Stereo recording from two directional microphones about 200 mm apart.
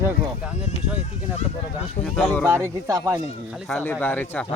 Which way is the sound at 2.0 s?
5° left (ahead or behind).